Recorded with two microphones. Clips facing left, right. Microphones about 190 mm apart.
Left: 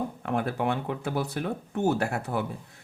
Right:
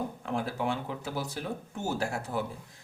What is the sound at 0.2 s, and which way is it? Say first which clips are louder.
Speech: left 6 dB; 60° left (ahead or behind).